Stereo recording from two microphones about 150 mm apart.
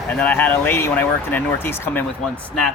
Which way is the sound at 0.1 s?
10° left (ahead or behind).